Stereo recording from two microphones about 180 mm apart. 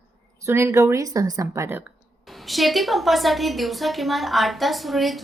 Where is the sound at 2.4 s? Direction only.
Centre (ahead or behind).